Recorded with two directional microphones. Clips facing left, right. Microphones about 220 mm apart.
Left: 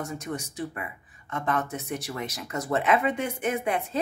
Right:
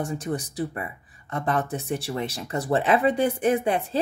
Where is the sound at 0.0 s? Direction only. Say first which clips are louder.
Right 5 dB; 30° right (ahead or behind).